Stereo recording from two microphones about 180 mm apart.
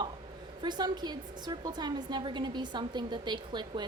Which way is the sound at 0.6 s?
25° right (ahead or behind).